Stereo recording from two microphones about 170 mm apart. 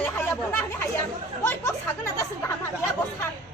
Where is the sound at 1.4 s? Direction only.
15° left (ahead or behind).